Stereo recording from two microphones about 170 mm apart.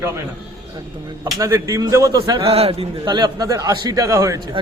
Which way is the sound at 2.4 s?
35° right (ahead or behind).